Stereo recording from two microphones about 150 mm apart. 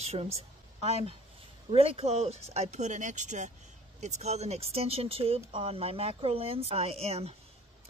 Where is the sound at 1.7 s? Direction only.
40° right (ahead or behind).